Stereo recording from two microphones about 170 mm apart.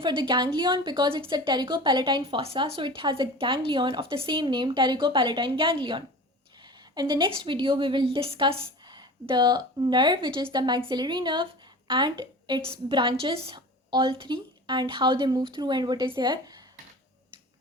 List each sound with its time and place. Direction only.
0.0 s a woman's voice: 30° right (ahead or behind)